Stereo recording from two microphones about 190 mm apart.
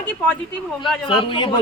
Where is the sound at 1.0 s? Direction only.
25° left (ahead or behind).